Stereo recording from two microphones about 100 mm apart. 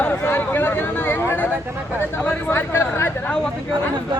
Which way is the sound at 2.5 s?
25° left (ahead or behind).